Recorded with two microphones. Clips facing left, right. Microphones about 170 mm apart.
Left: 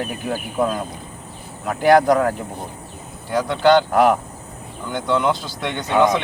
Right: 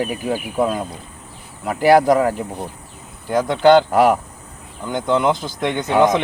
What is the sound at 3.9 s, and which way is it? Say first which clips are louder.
Speech: right 1 dB; 10° right (ahead or behind).